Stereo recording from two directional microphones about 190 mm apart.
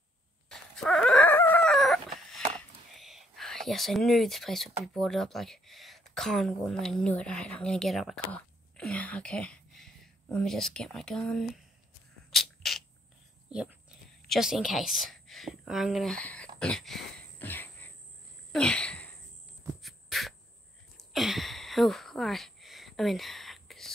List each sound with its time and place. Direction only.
0.5 s chicken: centre (ahead or behind)
2.9 s whispering: centre (ahead or behind)
4.8 s speech: centre (ahead or behind)
12.3 s a sound: centre (ahead or behind)
13.5 s a woman's voice: 5° right (ahead or behind)
16.5 s a sound: 5° left (ahead or behind)
18.5 s sneeze: 5° left (ahead or behind)
19.8 s beatboxing: centre (ahead or behind)
21.0 s a sound: centre (ahead or behind)